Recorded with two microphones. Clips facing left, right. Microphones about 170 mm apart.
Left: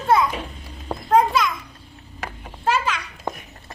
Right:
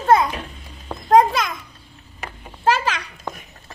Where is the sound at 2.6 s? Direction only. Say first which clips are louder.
Right 2 dB; 75° right (ahead or behind).